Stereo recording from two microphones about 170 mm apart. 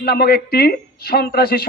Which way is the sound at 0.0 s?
65° left (ahead or behind).